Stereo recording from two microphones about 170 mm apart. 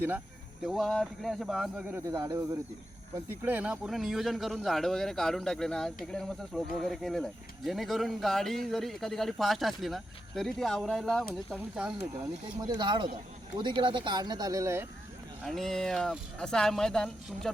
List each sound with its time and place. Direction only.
0.6 s speech: centre (ahead or behind)
1.9 s speech: 15° right (ahead or behind)
12.5 s speech: 25° right (ahead or behind)
15.4 s speech: centre (ahead or behind)